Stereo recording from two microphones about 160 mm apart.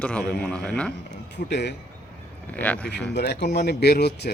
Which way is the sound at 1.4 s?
90° left.